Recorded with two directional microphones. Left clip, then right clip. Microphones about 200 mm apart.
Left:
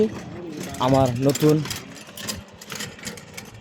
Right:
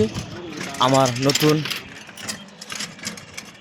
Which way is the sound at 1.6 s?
65° left (ahead or behind).